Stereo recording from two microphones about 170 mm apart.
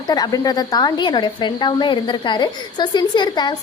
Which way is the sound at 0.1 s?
20° left (ahead or behind).